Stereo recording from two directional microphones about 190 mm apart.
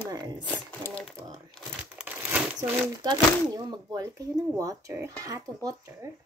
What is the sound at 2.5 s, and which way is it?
Speech, 20° right (ahead or behind).